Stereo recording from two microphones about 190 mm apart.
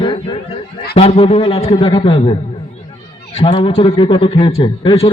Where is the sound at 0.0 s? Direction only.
25° left (ahead or behind).